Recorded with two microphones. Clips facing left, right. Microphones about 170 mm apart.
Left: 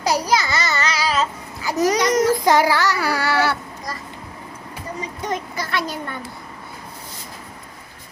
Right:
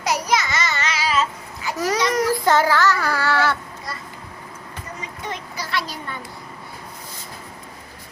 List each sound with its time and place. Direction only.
0.0 s babbling: 35° left (ahead or behind)
1.7 s a sound: 20° left (ahead or behind)
4.9 s speech: 45° left (ahead or behind)